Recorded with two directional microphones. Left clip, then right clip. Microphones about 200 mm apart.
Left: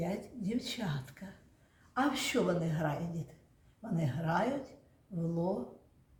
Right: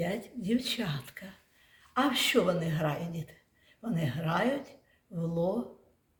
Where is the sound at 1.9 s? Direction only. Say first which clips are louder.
Right 5 dB; 45° right (ahead or behind).